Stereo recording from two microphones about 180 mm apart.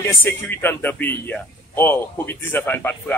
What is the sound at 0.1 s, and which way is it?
Speech, 10° left (ahead or behind).